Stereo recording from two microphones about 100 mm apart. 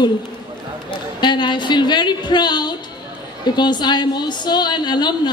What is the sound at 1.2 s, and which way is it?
A woman's voice, 50° left (ahead or behind).